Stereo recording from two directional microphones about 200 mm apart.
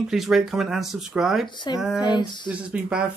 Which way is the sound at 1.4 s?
25° left (ahead or behind).